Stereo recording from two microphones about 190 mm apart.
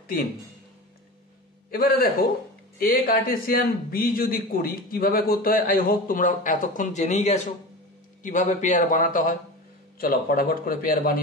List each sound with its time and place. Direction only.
1.7 s a man's voice: 50° left (ahead or behind)